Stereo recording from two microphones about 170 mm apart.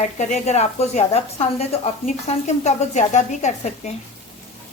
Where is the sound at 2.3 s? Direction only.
35° left (ahead or behind).